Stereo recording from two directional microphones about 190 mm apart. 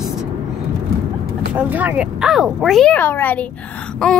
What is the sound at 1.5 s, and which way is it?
Speech, 10° right (ahead or behind).